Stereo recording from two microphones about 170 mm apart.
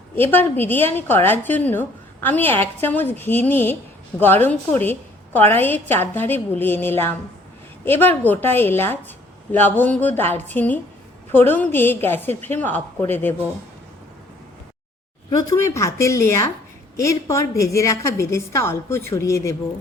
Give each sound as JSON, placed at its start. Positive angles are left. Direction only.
{"t": 0.2, "sound": "a woman's voice", "side_deg": 10}
{"t": 15.3, "sound": "a woman's voice", "side_deg": 20}